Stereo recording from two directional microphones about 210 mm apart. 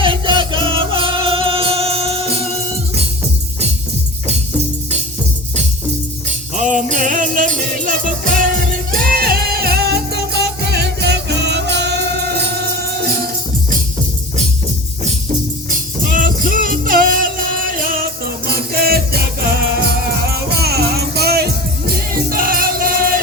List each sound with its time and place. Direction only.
0.0 s music: 25° right (ahead or behind)
6.2 s music: 35° right (ahead or behind)
15.7 s music: 40° right (ahead or behind)